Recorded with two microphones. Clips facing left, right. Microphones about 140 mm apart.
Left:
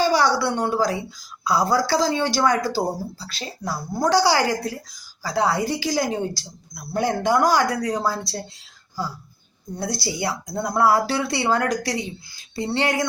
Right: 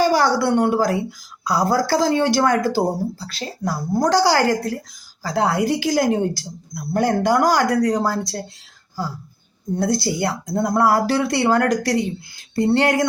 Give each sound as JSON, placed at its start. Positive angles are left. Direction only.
{"t": 0.0, "sound": "a sound", "side_deg": -50}
{"t": 0.8, "sound": "a woman's voice", "side_deg": -55}
{"t": 9.7, "sound": "a woman's voice", "side_deg": -50}